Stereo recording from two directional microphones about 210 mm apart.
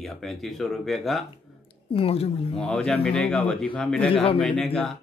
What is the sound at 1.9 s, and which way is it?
Speech, 25° left (ahead or behind).